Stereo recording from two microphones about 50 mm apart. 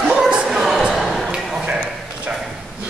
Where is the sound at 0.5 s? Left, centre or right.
Centre.